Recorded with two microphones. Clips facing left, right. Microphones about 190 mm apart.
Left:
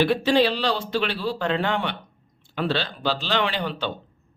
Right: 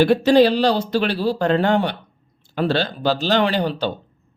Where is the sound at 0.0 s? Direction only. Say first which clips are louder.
Right 6 dB; 45° right (ahead or behind).